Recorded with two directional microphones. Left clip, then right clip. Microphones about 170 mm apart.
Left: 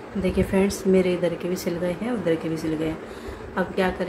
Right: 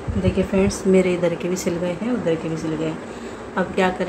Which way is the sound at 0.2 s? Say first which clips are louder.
Right 2 dB; 5° left (ahead or behind).